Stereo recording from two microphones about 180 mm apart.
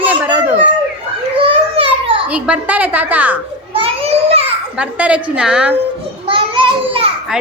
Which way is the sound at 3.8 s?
30° right (ahead or behind).